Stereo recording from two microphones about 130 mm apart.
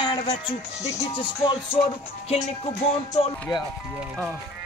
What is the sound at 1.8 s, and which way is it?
Music, 70° left (ahead or behind).